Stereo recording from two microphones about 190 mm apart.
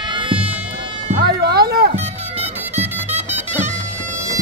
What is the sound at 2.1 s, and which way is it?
Music, 35° right (ahead or behind).